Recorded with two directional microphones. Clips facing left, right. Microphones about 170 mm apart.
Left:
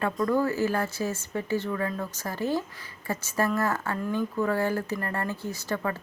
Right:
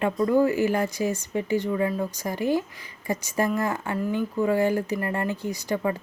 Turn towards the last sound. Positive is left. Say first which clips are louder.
# right 4 dB
turn(degrees=-15)  # may be behind; listen again after turning